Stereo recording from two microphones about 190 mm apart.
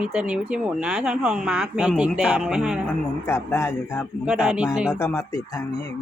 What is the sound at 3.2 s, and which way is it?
Speech, 15° left (ahead or behind).